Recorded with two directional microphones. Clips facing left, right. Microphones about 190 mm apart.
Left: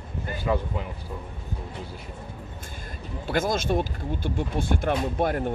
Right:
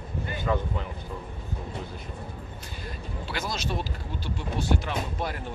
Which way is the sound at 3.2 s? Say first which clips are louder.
Left 8 dB; 50° left (ahead or behind).